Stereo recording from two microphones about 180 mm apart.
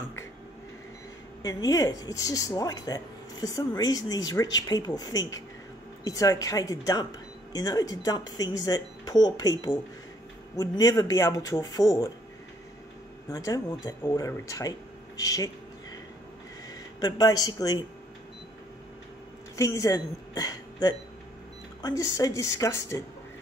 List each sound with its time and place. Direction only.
1.4 s speech: 20° left (ahead or behind)
10.5 s speech: 20° left (ahead or behind)
13.3 s speech: 20° left (ahead or behind)
17.0 s speech: 20° left (ahead or behind)
19.5 s a woman's voice: 20° left (ahead or behind)